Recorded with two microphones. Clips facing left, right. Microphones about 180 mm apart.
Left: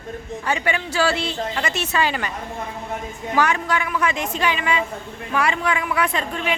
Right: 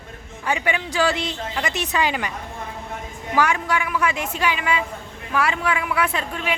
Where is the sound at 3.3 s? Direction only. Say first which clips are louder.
Even; 10° right (ahead or behind).